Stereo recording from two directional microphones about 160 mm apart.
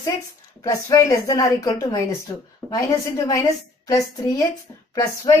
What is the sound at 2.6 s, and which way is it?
Speech, centre (ahead or behind).